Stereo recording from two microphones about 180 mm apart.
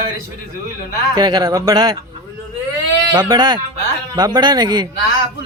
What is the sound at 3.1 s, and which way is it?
Speech, 20° right (ahead or behind).